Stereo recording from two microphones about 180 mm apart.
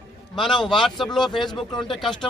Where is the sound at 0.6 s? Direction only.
Centre (ahead or behind).